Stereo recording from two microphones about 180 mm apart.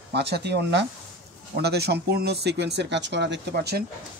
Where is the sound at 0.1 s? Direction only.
65° right (ahead or behind).